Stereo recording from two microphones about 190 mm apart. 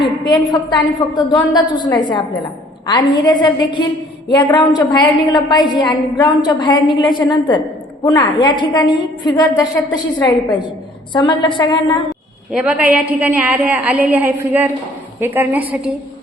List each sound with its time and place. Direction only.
0.0 s a woman's voice: 20° left (ahead or behind)
12.5 s a woman's voice: 5° right (ahead or behind)